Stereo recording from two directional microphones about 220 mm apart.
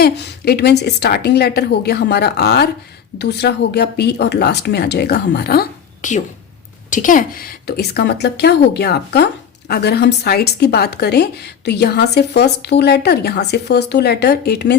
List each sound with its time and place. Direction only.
0.0 s a woman's voice: 45° left (ahead or behind)